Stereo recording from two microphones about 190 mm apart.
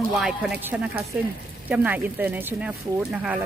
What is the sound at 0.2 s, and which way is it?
Speech, 5° right (ahead or behind).